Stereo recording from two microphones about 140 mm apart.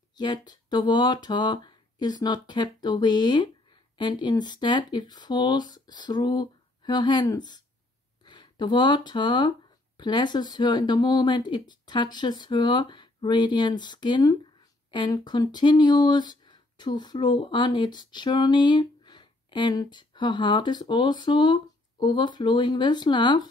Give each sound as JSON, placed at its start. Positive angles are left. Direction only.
{"t": 0.2, "sound": "speech", "side_deg": 30}